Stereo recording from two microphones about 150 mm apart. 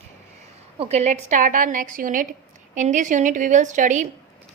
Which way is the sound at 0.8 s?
45° right (ahead or behind).